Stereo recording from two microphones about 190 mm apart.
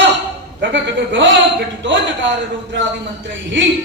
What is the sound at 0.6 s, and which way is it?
Speech, 75° right (ahead or behind).